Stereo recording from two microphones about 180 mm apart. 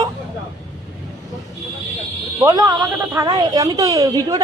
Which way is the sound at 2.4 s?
20° right (ahead or behind).